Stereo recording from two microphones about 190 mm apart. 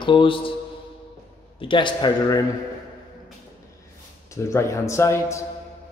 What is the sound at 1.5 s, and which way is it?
Speech, 25° left (ahead or behind).